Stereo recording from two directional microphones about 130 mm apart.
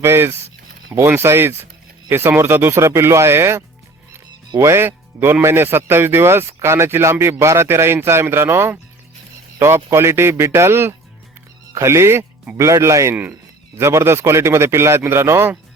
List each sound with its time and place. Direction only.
0.0 s speech: 20° right (ahead or behind)